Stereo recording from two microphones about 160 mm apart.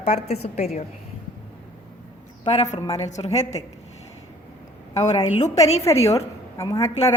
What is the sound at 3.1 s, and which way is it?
Speech, 45° left (ahead or behind).